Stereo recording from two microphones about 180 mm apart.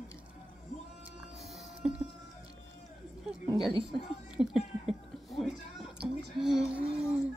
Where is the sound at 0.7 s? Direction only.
40° left (ahead or behind).